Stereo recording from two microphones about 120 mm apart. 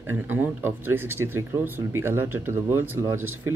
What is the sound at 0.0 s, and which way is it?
Speech, 15° right (ahead or behind).